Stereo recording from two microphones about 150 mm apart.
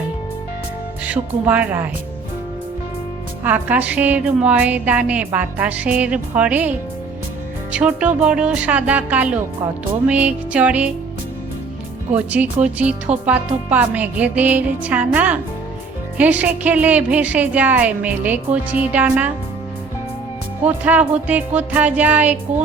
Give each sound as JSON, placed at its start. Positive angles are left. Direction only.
{"t": 1.0, "sound": "speech", "side_deg": -10}
{"t": 3.4, "sound": "speech", "side_deg": -10}
{"t": 12.1, "sound": "speech", "side_deg": -10}
{"t": 20.7, "sound": "speech", "side_deg": -10}